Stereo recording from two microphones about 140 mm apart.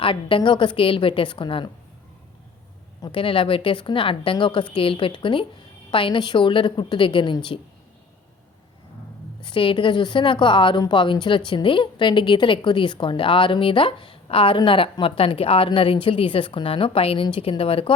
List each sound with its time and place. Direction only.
0.0 s a woman's voice: 40° left (ahead or behind)
3.0 s a woman's voice: 40° left (ahead or behind)
9.4 s a woman's voice: 35° left (ahead or behind)